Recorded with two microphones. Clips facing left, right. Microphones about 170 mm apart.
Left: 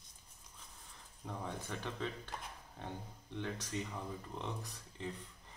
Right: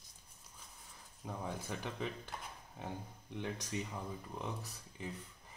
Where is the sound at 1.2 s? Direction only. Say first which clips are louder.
Right 1 dB; 10° right (ahead or behind).